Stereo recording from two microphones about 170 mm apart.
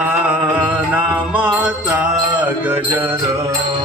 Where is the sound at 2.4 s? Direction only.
10° right (ahead or behind).